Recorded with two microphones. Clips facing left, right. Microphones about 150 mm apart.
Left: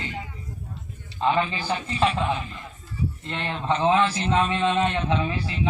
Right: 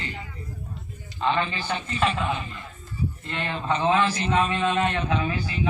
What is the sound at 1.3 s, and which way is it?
A man's voice, 5° left (ahead or behind).